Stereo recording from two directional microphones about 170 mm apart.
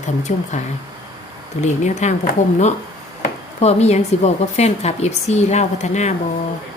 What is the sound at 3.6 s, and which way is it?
A woman's voice, 40° left (ahead or behind).